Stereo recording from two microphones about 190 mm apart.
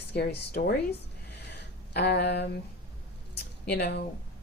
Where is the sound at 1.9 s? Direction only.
60° left (ahead or behind).